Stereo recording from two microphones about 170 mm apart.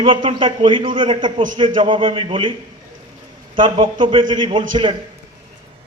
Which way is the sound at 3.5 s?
30° right (ahead or behind).